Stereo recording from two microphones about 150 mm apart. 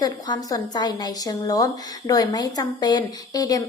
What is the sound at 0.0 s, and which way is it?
A woman's voice, 25° left (ahead or behind).